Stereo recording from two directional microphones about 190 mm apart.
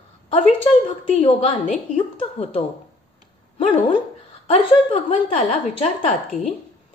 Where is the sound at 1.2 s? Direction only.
30° left (ahead or behind).